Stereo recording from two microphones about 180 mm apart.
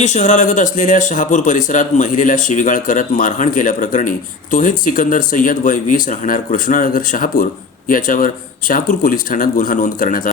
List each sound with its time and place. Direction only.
0.0 s speech: 40° left (ahead or behind)